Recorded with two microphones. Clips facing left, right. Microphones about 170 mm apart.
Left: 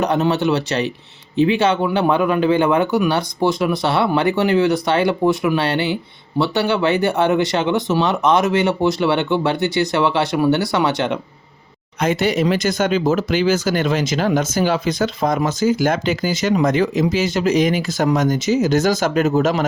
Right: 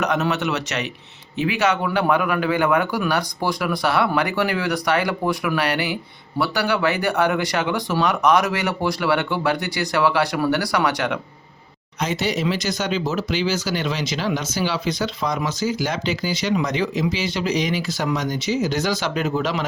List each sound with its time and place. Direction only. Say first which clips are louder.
0.0 s speech: left 4 dB; 30° left (ahead or behind)
11.9 s speech: left 6 dB; 55° left (ahead or behind)